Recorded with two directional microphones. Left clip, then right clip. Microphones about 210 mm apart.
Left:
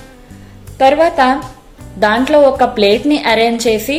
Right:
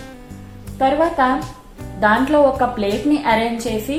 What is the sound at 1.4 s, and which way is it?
Music, centre (ahead or behind).